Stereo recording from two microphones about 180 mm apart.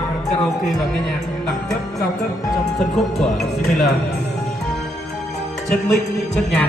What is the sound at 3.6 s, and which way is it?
Speech, centre (ahead or behind).